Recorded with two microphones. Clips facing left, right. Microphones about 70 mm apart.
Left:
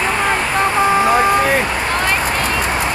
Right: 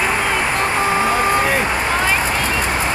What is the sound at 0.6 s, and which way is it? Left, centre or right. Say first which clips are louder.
Vehicle: left 6 dB; left.